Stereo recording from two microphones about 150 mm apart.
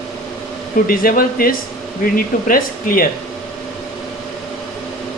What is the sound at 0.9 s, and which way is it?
Speech, 75° left (ahead or behind).